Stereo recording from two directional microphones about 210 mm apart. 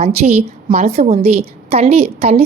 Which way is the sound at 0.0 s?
30° right (ahead or behind).